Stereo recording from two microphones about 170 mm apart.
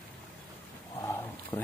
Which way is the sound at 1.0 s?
15° left (ahead or behind).